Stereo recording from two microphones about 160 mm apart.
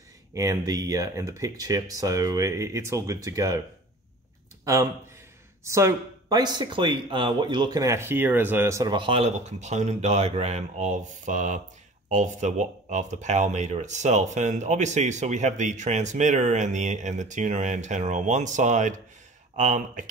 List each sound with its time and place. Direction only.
0.3 s speech: 20° right (ahead or behind)
5.6 s speech: 15° right (ahead or behind)
8.9 s speech: 35° right (ahead or behind); by 20.1 s 50° right (ahead or behind)